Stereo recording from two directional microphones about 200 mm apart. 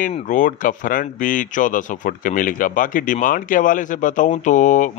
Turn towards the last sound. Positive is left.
turn(degrees=40)  # may be behind; listen again after turning